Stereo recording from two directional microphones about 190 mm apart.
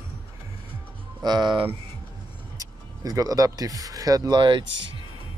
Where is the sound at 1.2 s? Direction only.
20° right (ahead or behind).